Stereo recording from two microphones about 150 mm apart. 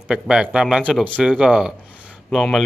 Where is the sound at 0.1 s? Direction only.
5° right (ahead or behind).